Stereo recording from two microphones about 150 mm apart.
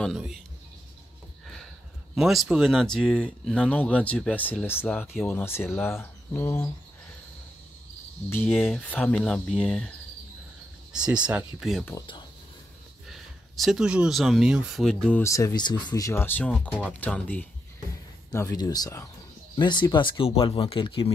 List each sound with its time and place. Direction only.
0.0 s speech: centre (ahead or behind)
2.1 s speech: centre (ahead or behind); by 6.7 s 15° left (ahead or behind)
8.3 s speech: 15° left (ahead or behind)
8.5 s speech: 5° right (ahead or behind)
11.1 s speech: 5° right (ahead or behind)
13.1 s speech: centre (ahead or behind)
15.2 s speech: 20° left (ahead or behind)
18.3 s speech: 20° left (ahead or behind)